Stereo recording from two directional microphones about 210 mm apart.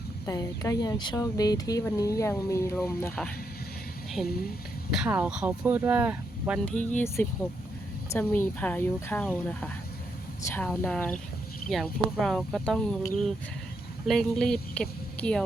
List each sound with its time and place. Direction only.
0.3 s speech: 15° left (ahead or behind)
4.9 s speech: 5° right (ahead or behind)
6.7 s a woman's voice: 5° left (ahead or behind)
14.1 s a woman's voice: centre (ahead or behind)